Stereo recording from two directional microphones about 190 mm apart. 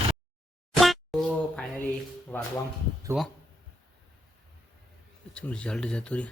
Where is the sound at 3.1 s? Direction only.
10° right (ahead or behind).